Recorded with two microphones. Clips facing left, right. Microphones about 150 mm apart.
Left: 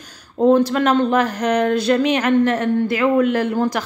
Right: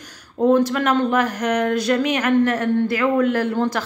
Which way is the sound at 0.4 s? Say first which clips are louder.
Left 2 dB; 30° left (ahead or behind).